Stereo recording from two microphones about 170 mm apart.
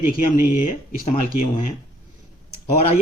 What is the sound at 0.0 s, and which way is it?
Speech, 55° left (ahead or behind).